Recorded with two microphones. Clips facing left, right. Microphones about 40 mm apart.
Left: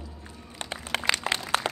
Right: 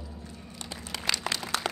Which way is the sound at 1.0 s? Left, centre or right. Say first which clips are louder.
Left 3 dB; left.